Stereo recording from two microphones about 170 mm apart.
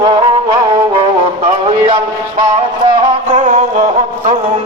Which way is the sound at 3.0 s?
45° right (ahead or behind).